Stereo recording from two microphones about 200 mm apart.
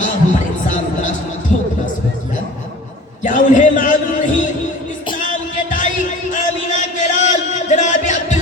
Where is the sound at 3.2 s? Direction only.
40° left (ahead or behind).